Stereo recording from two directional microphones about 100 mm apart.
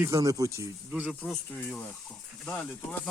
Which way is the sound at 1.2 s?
10° left (ahead or behind).